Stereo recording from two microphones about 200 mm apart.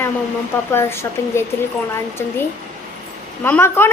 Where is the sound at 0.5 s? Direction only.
10° left (ahead or behind).